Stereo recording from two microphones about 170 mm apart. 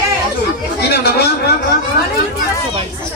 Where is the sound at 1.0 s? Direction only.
70° left (ahead or behind).